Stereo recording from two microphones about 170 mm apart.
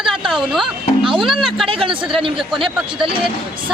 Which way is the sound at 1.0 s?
30° right (ahead or behind).